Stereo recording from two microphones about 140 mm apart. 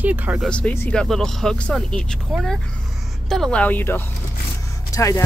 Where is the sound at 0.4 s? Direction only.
10° left (ahead or behind).